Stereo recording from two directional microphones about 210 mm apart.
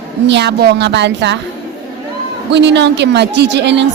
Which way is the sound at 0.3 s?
55° right (ahead or behind).